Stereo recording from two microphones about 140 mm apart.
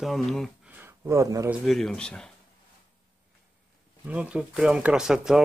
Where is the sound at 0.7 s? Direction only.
15° right (ahead or behind).